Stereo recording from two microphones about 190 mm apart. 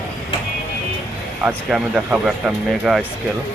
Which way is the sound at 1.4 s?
5° right (ahead or behind).